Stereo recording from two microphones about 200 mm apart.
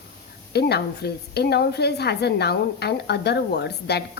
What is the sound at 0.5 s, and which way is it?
A woman's voice, 55° left (ahead or behind).